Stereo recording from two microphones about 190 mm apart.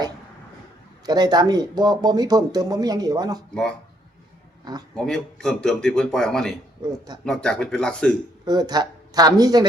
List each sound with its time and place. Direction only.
1.0 s speech: 20° right (ahead or behind)
3.5 s speech: 5° left (ahead or behind)
5.0 s speech: 5° left (ahead or behind)
8.4 s speech: 20° right (ahead or behind)